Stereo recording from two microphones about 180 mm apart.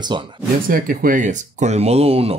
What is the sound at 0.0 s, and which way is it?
Speech, 25° right (ahead or behind).